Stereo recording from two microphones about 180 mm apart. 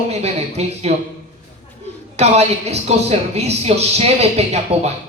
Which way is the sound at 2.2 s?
35° right (ahead or behind).